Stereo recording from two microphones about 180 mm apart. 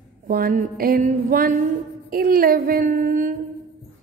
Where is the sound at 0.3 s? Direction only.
50° right (ahead or behind).